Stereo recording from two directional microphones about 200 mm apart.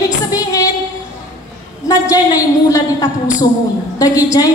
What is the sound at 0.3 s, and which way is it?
Music, 15° left (ahead or behind).